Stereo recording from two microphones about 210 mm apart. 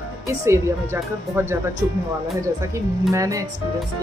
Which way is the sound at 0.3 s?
10° right (ahead or behind).